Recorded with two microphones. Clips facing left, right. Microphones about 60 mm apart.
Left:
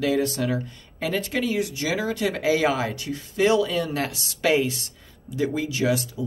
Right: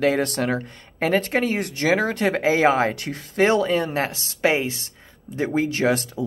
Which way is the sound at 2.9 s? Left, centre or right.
Right.